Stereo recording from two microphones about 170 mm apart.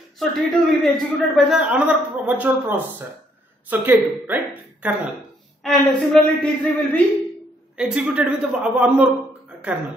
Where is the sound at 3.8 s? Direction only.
10° right (ahead or behind).